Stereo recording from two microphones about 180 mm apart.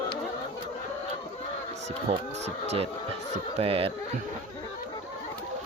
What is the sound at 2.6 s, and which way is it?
Speech, 35° right (ahead or behind).